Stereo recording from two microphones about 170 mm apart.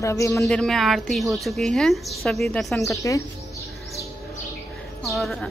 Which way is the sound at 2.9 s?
20° left (ahead or behind).